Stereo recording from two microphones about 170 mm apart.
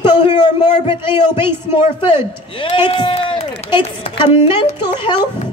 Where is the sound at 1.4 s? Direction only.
30° left (ahead or behind).